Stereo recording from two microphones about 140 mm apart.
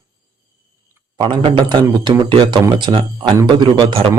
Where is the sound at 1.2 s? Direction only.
40° right (ahead or behind).